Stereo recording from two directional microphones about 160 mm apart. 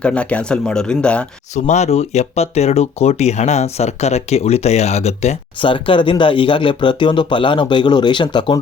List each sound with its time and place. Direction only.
0.0 s speech: 5° left (ahead or behind)
1.5 s speech: 45° left (ahead or behind)
5.5 s speech: 30° left (ahead or behind)